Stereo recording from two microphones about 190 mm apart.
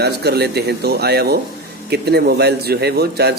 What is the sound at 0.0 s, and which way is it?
A man's voice, 60° right (ahead or behind).